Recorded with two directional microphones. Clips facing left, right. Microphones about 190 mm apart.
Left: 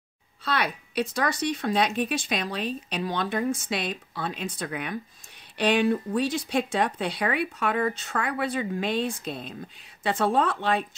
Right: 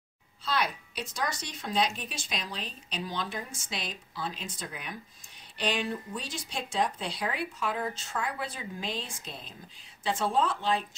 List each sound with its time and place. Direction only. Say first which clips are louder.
0.5 s speech: left 3 dB; 60° left (ahead or behind)